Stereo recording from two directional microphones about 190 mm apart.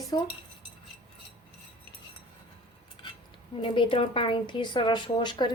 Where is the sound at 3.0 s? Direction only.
25° left (ahead or behind).